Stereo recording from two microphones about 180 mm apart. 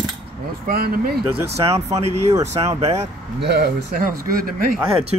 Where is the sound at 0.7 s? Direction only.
55° right (ahead or behind).